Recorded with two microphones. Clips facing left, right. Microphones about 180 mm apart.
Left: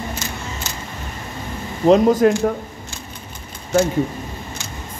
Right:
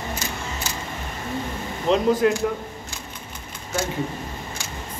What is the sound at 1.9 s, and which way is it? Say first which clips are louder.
Speech: left 6 dB; 45° left (ahead or behind).